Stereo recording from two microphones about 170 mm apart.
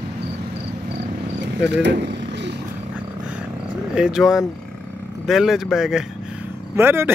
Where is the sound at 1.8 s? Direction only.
90° right.